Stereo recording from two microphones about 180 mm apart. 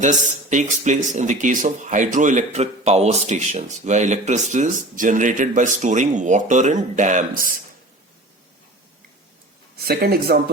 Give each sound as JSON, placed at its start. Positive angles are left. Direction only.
{"t": 0.0, "sound": "speech", "side_deg": -45}
{"t": 9.7, "sound": "speech", "side_deg": -60}